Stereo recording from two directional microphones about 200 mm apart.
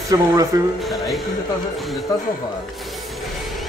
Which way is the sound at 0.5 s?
20° right (ahead or behind).